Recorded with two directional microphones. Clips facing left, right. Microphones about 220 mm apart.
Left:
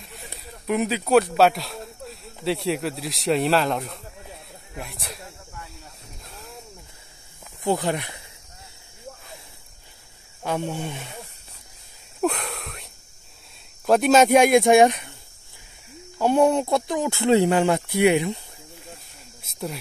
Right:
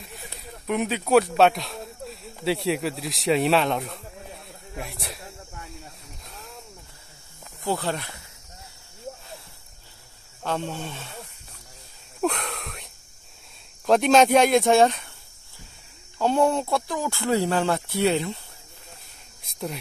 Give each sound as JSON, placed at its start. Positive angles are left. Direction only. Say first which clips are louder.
{"t": 0.0, "sound": "speech", "louder": "even", "side_deg": 0}
{"t": 6.2, "sound": "a sound", "louder": "left 1 dB", "side_deg": 0}
{"t": 7.6, "sound": "speech", "louder": "left 4 dB", "side_deg": 15}
{"t": 10.4, "sound": "speech", "louder": "left 2 dB", "side_deg": 15}
{"t": 12.2, "sound": "a sound", "louder": "left 1 dB", "side_deg": 5}
{"t": 13.8, "sound": "speech", "louder": "left 1 dB", "side_deg": 5}
{"t": 16.2, "sound": "speech", "louder": "left 3 dB", "side_deg": 15}